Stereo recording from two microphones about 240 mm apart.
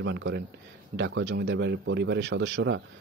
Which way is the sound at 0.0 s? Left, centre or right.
Right.